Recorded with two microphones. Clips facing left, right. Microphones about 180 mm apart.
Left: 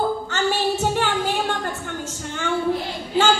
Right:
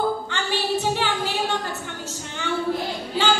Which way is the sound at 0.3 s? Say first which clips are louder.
Left 3 dB; 45° left (ahead or behind).